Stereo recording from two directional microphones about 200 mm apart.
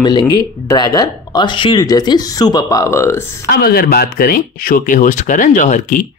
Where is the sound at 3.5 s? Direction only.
50° left (ahead or behind).